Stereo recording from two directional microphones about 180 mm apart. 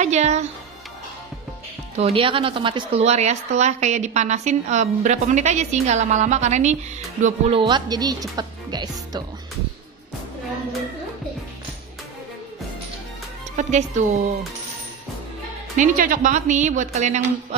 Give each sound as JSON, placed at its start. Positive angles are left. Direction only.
{"t": 0.0, "sound": "a woman's voice", "side_deg": -40}
{"t": 2.0, "sound": "a woman's voice", "side_deg": -30}
{"t": 7.6, "sound": "a woman's voice", "side_deg": -25}
{"t": 13.6, "sound": "a woman's voice", "side_deg": -40}
{"t": 15.7, "sound": "speech", "side_deg": -45}